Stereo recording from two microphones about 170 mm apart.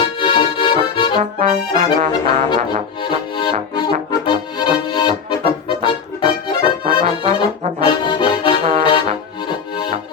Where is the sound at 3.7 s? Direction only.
25° left (ahead or behind).